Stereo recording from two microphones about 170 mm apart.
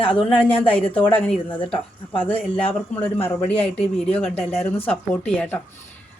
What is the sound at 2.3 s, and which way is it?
Speech, 35° left (ahead or behind).